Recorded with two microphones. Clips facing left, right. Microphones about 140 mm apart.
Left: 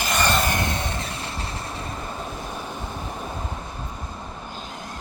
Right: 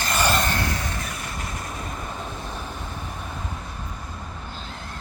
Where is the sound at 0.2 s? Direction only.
5° right (ahead or behind).